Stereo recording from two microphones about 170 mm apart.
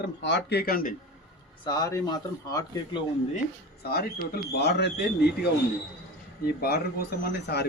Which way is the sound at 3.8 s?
65° left (ahead or behind).